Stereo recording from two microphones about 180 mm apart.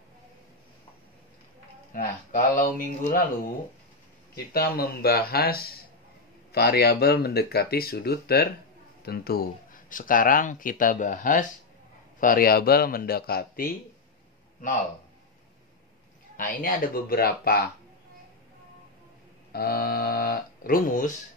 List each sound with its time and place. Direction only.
2.0 s speech: 50° left (ahead or behind)
4.6 s speech: 55° left (ahead or behind)
16.3 s speech: 50° left (ahead or behind)
19.5 s speech: 60° left (ahead or behind)